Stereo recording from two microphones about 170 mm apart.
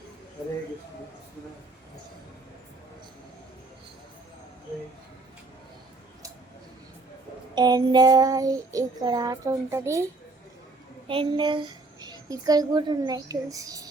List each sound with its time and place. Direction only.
7.5 s a child's voice: 25° right (ahead or behind)
11.1 s a child's voice: 30° right (ahead or behind)